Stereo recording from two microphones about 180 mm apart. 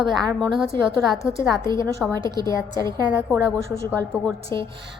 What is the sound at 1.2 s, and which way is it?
Speech, 15° left (ahead or behind).